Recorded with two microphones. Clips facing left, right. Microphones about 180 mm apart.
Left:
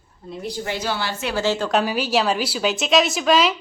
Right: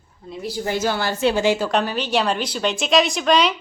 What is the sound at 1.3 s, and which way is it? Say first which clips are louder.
Speech: right 2 dB; 15° right (ahead or behind).